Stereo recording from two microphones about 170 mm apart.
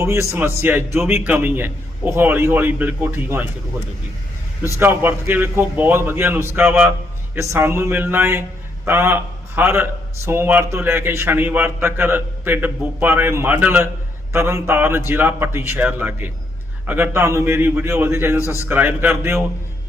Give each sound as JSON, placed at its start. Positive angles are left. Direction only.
{"t": 0.0, "sound": "a man's voice", "side_deg": -15}
{"t": 4.8, "sound": "a man's voice", "side_deg": -15}
{"t": 18.3, "sound": "a man's voice", "side_deg": 15}
{"t": 18.7, "sound": "a man's voice", "side_deg": -10}